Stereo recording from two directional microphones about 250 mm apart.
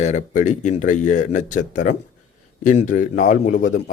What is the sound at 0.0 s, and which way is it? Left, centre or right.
A man's voice, left.